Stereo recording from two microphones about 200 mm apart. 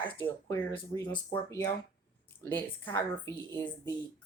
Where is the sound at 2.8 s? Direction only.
10° left (ahead or behind).